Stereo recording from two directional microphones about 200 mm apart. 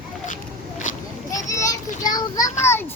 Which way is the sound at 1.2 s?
15° left (ahead or behind).